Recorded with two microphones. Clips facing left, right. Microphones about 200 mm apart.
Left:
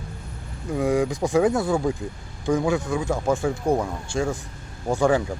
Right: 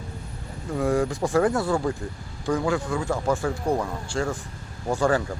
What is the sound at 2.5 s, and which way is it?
Speech, 20° left (ahead or behind).